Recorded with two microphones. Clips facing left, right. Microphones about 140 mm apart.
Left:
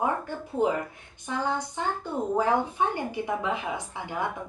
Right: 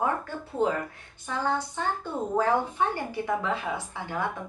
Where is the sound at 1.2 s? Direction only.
15° left (ahead or behind).